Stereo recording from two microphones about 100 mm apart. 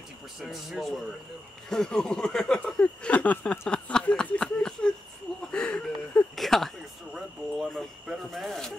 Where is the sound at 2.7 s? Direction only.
15° left (ahead or behind).